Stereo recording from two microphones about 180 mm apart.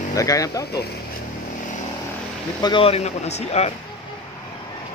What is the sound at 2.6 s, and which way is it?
Speech, 30° left (ahead or behind).